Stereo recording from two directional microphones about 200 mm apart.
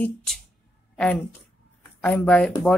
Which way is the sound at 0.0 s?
5° left (ahead or behind).